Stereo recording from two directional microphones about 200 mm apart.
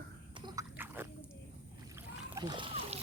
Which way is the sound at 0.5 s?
10° right (ahead or behind).